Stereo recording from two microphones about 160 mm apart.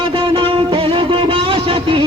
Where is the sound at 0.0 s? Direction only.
35° right (ahead or behind).